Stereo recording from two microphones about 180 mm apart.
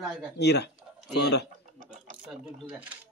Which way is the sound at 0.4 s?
70° left (ahead or behind).